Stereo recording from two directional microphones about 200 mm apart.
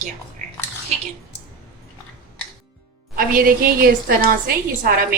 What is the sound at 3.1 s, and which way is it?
A woman's voice, 45° right (ahead or behind).